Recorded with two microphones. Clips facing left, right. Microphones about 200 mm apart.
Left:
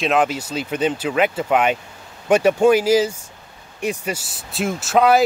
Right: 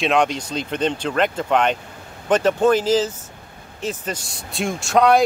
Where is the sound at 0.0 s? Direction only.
5° left (ahead or behind).